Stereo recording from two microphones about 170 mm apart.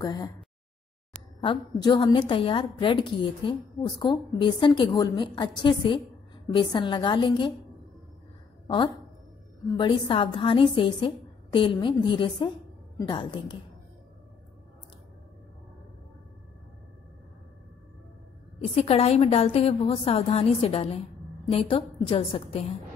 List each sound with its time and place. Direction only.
0.0 s a woman's voice: 20° left (ahead or behind)
1.4 s a woman's voice: 30° left (ahead or behind)
8.6 s a woman's voice: 25° left (ahead or behind)
18.6 s a woman's voice: 35° left (ahead or behind)